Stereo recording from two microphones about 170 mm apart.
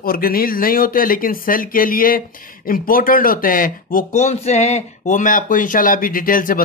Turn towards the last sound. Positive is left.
turn(degrees=55)  # may be behind; listen again after turning